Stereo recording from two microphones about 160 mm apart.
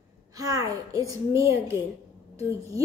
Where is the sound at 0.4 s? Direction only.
20° right (ahead or behind).